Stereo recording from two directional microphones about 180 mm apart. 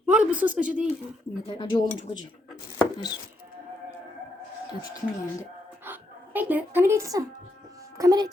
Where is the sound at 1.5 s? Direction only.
25° left (ahead or behind).